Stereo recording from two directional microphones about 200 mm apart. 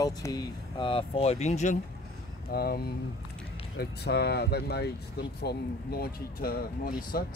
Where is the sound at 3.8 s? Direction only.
55° left (ahead or behind).